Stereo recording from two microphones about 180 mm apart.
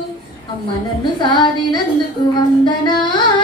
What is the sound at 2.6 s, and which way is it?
Music, 25° left (ahead or behind).